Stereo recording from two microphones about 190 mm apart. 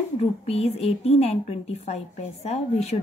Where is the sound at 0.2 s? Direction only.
35° left (ahead or behind).